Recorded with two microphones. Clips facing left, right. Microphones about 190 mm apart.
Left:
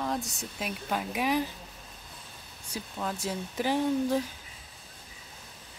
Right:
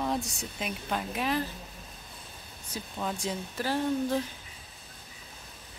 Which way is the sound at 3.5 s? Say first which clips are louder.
Left 2 dB; 15° left (ahead or behind).